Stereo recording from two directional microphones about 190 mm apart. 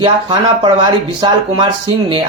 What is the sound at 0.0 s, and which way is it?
Speech, 25° right (ahead or behind).